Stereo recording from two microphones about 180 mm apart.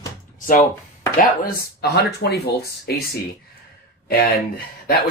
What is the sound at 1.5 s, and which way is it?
Speech, 60° left (ahead or behind).